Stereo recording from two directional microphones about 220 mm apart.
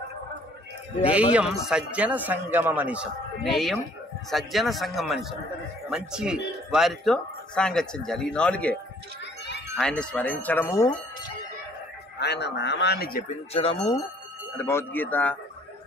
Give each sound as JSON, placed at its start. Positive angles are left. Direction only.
{"t": 1.0, "sound": "speech", "side_deg": -5}
{"t": 9.8, "sound": "speech", "side_deg": 5}
{"t": 12.2, "sound": "speech", "side_deg": 50}
{"t": 13.5, "sound": "speech", "side_deg": 25}
{"t": 14.6, "sound": "speech", "side_deg": 10}